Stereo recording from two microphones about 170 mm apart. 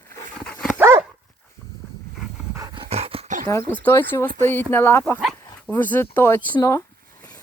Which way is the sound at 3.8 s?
15° left (ahead or behind).